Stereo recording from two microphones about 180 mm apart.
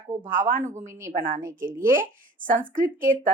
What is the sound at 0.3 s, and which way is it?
Speech, 50° right (ahead or behind).